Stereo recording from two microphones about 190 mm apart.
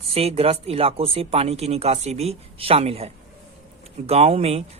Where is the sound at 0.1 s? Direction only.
30° right (ahead or behind).